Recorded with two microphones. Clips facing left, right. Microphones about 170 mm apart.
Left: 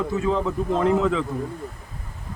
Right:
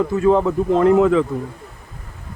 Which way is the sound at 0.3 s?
60° right (ahead or behind).